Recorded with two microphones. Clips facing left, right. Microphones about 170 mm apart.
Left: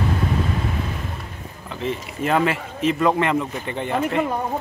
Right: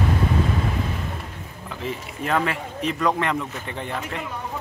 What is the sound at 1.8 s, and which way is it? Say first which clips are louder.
Speech: left 5 dB; centre (ahead or behind).